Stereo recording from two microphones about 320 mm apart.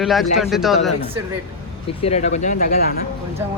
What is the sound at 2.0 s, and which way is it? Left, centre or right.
Speech, centre.